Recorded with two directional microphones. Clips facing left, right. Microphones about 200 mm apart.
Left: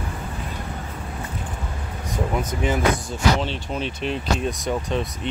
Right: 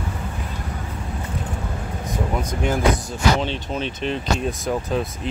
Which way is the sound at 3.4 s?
Centre (ahead or behind).